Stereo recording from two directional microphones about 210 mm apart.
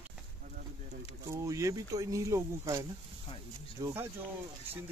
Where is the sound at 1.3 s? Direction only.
15° right (ahead or behind).